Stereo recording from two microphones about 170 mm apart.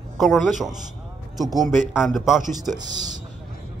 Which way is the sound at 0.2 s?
Centre (ahead or behind).